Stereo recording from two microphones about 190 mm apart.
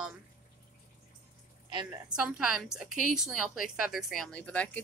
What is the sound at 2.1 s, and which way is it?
Speech, 5° right (ahead or behind).